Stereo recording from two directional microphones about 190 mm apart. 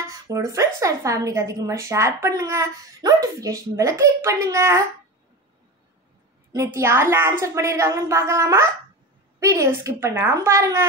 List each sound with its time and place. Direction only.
0.1 s a woman's voice: 15° right (ahead or behind)
6.5 s a woman's voice: 15° right (ahead or behind)